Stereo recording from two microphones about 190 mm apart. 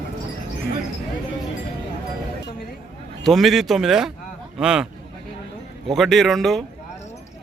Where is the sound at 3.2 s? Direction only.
Centre (ahead or behind).